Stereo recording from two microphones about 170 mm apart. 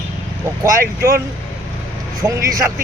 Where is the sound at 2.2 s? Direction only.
20° right (ahead or behind).